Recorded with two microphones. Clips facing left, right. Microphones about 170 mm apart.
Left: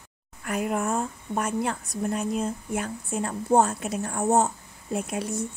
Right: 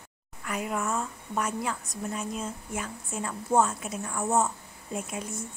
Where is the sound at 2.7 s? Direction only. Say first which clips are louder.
Left 6 dB; 60° left (ahead or behind).